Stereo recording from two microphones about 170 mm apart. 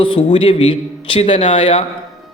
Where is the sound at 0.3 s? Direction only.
35° left (ahead or behind).